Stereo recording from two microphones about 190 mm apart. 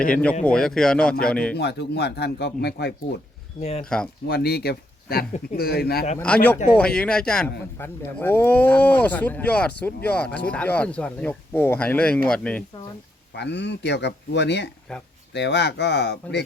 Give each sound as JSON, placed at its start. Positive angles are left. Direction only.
{"t": 0.1, "sound": "speech", "side_deg": 5}
{"t": 1.5, "sound": "speech", "side_deg": 60}
{"t": 3.6, "sound": "speech", "side_deg": 35}
{"t": 3.8, "sound": "speech", "side_deg": 5}
{"t": 4.3, "sound": "speech", "side_deg": 55}
{"t": 6.1, "sound": "speech", "side_deg": 5}
{"t": 13.3, "sound": "speech", "side_deg": 65}